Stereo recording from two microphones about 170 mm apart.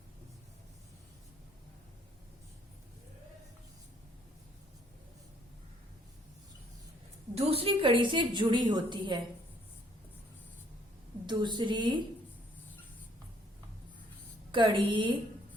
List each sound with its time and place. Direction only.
7.3 s a woman's voice: 35° right (ahead or behind)
11.3 s a woman's voice: 25° right (ahead or behind)
14.5 s a woman's voice: 30° right (ahead or behind)